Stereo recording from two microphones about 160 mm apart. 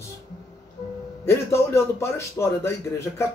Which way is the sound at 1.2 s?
15° left (ahead or behind).